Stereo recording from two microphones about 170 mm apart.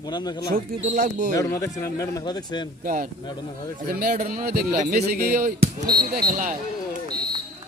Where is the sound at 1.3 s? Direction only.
20° left (ahead or behind).